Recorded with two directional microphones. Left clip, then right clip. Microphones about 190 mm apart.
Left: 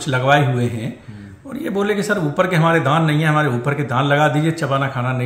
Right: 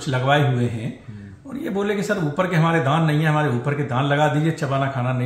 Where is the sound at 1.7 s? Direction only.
25° left (ahead or behind).